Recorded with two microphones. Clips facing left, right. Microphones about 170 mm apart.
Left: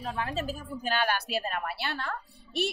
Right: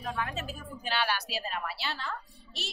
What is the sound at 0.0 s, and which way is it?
A woman's voice, 30° left (ahead or behind).